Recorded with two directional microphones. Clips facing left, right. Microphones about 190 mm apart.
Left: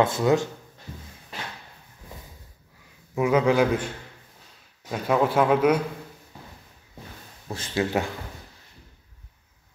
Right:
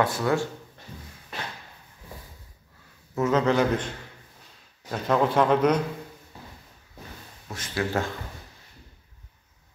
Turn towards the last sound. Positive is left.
turn(degrees=30)  # may be behind; listen again after turning